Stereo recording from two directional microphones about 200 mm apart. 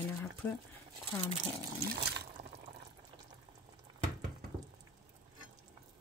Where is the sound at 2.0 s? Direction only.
55° right (ahead or behind).